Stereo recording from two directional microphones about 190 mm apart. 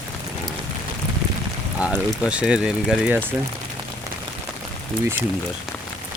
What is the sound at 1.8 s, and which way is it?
Speech, 5° right (ahead or behind).